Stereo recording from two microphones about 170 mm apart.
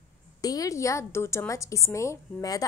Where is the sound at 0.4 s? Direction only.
20° left (ahead or behind).